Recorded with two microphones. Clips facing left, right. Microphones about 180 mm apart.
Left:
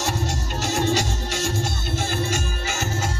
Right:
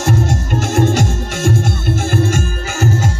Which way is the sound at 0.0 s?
50° right (ahead or behind).